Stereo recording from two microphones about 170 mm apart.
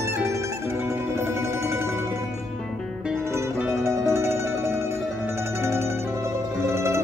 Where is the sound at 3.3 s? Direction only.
15° right (ahead or behind).